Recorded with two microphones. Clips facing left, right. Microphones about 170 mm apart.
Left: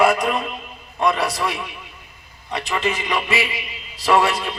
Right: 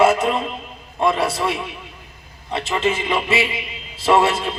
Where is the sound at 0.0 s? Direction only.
25° right (ahead or behind).